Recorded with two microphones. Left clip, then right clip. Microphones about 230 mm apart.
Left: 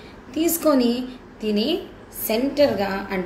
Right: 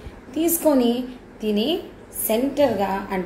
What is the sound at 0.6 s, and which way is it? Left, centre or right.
A woman's voice, centre.